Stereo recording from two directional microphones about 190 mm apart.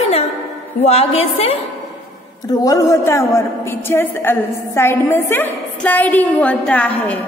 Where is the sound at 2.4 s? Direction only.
20° left (ahead or behind).